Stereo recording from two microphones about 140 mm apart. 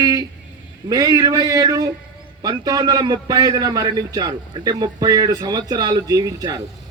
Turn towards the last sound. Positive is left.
turn(degrees=-25)  # may be behind; listen again after turning